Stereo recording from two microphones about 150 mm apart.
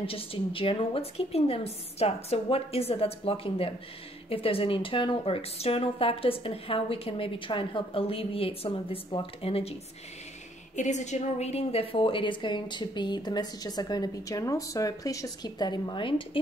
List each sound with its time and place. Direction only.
0.0 s a woman's voice: 40° left (ahead or behind)
10.8 s a woman's voice: 50° left (ahead or behind); by 16.3 s 35° left (ahead or behind)